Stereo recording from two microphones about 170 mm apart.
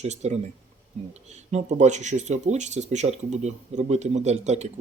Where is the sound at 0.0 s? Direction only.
40° right (ahead or behind).